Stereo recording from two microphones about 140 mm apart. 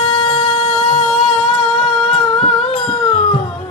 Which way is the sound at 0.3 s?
45° left (ahead or behind).